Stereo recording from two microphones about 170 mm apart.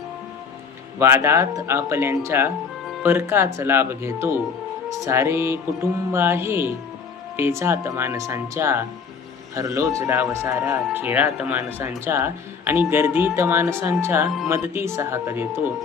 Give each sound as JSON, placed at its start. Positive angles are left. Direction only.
{"t": 0.9, "sound": "speech", "side_deg": -15}